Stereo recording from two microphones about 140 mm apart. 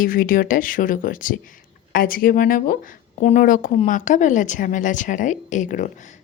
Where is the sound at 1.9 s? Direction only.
90° left.